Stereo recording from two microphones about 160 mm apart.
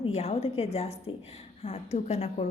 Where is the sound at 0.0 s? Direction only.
40° left (ahead or behind).